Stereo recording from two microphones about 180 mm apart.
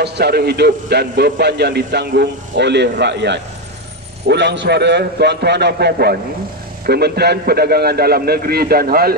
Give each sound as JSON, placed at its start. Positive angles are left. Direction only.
{"t": 0.0, "sound": "a man's voice", "side_deg": -65}